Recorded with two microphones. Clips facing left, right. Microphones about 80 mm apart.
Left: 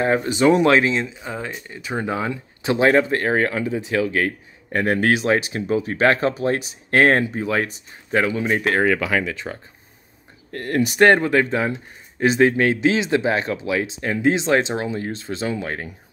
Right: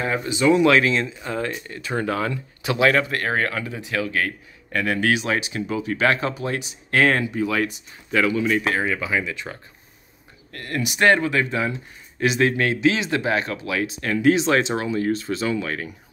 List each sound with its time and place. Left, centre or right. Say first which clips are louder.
0.0 s speech: left 4 dB; left
1.0 s speech: right 3 dB; centre; by 8.6 s left
8.7 s speech: left 4 dB; left
9.3 s speech: left 2 dB; left